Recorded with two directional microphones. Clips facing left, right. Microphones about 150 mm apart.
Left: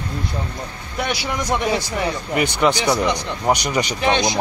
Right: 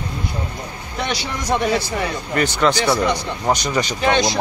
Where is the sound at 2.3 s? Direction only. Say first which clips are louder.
Right 1 dB; 15° left (ahead or behind).